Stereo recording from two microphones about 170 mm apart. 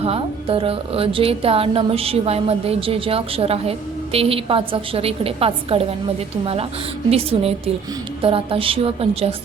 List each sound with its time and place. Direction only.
0.0 s a woman's voice: 35° right (ahead or behind)